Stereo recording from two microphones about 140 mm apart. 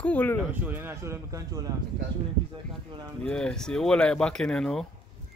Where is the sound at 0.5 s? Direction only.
15° right (ahead or behind).